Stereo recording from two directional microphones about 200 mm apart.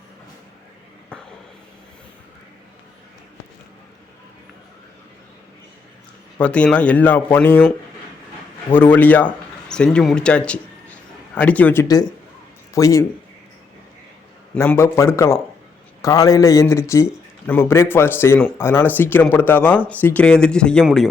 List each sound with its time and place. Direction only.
1.1 s a sound: 5° left (ahead or behind)
6.4 s a man's voice: 5° left (ahead or behind)
8.7 s a man's voice: 10° left (ahead or behind)
14.5 s a man's voice: 10° left (ahead or behind)